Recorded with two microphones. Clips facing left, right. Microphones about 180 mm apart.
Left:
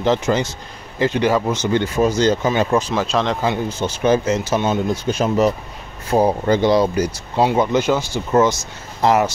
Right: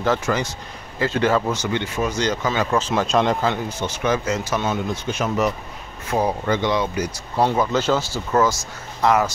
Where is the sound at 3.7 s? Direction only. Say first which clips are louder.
Left 5 dB; 30° left (ahead or behind).